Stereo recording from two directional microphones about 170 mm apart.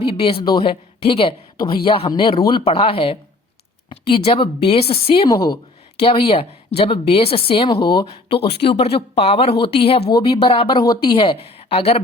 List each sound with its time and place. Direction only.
0.0 s a woman's voice: 30° left (ahead or behind)
11.5 s a woman's voice: 35° left (ahead or behind)